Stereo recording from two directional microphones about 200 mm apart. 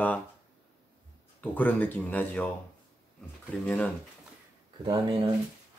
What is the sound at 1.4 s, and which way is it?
Speech, 10° left (ahead or behind).